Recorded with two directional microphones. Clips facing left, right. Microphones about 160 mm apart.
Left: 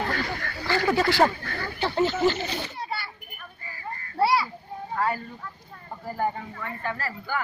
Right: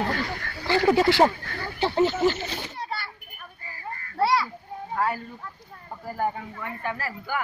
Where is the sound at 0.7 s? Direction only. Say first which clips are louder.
Right 3 dB; 20° right (ahead or behind).